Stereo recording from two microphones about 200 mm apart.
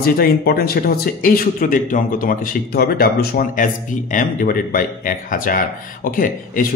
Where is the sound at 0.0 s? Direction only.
50° left (ahead or behind).